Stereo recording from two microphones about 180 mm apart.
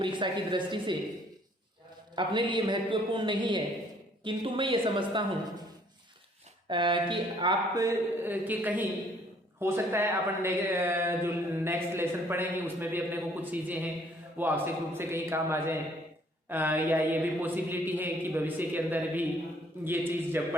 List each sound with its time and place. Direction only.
0.0 s speech: 25° right (ahead or behind)
2.1 s speech: 25° right (ahead or behind)
6.7 s speech: 25° right (ahead or behind)